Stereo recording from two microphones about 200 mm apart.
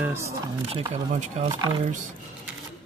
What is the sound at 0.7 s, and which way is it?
Speech, 30° right (ahead or behind).